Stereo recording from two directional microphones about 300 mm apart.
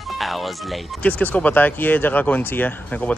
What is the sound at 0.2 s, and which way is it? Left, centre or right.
Speech, centre.